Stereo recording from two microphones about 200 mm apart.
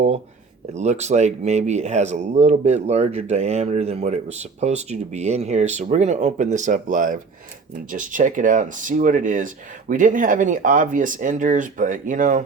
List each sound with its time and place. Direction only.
0.7 s speech: 35° right (ahead or behind)